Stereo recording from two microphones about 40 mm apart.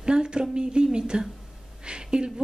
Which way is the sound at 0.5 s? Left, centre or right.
Right.